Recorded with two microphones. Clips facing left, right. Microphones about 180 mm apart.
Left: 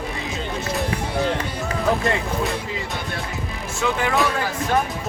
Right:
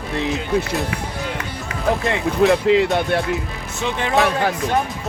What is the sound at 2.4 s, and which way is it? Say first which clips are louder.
Speech: right 12 dB; 70° right (ahead or behind).